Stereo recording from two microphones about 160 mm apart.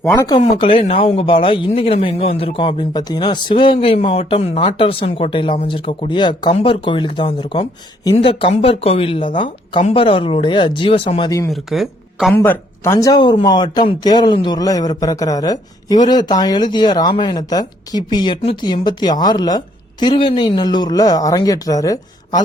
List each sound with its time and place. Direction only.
0.1 s speech: 25° left (ahead or behind)
11.3 s speech: 20° left (ahead or behind)
11.5 s a woman's voice: centre (ahead or behind)
12.3 s speech: 15° left (ahead or behind)